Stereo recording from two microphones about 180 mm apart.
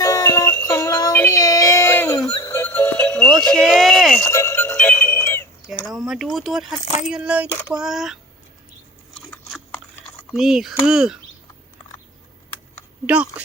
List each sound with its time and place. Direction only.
0.0 s synthetic singing: 15° left (ahead or behind)
4.3 s synthetic singing: 15° left (ahead or behind)
5.9 s speech: centre (ahead or behind)
7.0 s coin: 5° right (ahead or behind)
7.7 s speech: centre (ahead or behind)
9.3 s chewing: 10° left (ahead or behind)
10.3 s speech: centre (ahead or behind)
13.1 s coin: 5° right (ahead or behind)